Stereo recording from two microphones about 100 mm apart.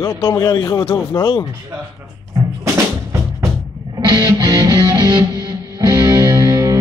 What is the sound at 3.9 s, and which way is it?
Music, 50° right (ahead or behind).